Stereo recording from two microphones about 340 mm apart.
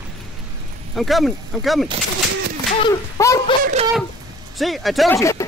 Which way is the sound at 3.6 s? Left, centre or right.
Centre.